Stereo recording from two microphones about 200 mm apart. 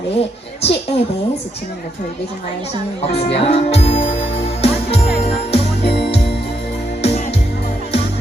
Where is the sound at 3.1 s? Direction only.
30° left (ahead or behind).